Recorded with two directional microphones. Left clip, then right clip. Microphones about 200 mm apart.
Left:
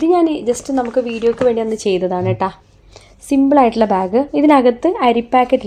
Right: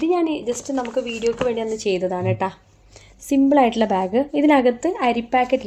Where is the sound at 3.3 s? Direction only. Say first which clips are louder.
Left 4 dB; 20° left (ahead or behind); by 5.6 s 40° left (ahead or behind).